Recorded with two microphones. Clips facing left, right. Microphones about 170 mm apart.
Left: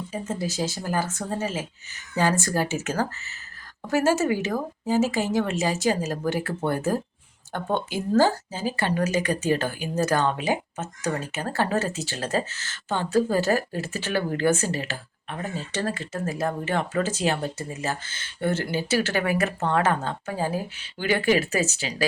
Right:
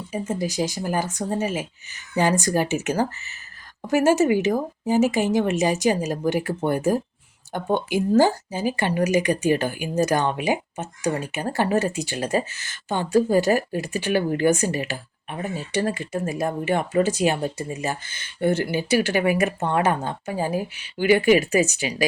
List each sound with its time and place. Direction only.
0.1 s speech: 15° right (ahead or behind)